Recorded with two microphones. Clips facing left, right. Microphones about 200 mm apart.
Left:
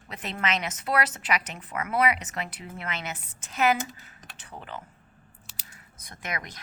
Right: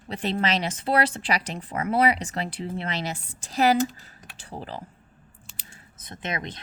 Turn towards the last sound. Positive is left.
turn(degrees=-25)  # may be behind; listen again after turning